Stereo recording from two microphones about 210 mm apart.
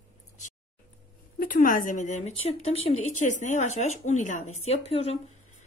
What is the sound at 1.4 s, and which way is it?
Speech, 40° left (ahead or behind).